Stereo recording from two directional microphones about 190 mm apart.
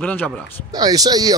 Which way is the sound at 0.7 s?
20° right (ahead or behind).